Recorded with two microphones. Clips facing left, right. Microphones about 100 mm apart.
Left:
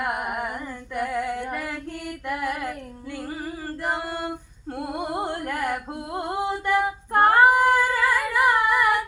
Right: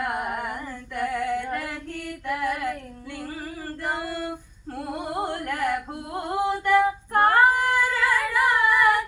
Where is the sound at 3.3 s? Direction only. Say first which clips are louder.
Left 3 dB; 20° left (ahead or behind).